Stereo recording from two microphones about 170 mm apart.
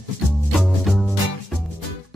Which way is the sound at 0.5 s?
Centre (ahead or behind).